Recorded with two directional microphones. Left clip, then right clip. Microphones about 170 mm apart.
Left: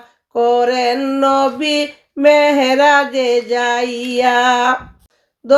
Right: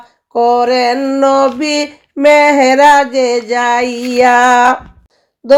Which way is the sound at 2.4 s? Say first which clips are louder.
Right 4 dB; 15° right (ahead or behind).